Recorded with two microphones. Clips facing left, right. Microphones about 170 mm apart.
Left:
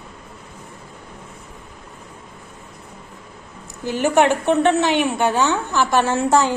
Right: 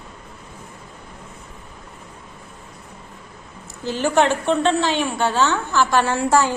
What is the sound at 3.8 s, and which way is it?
A woman's voice, 15° left (ahead or behind).